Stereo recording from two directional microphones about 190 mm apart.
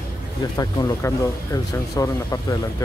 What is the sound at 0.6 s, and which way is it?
Speech, 20° left (ahead or behind).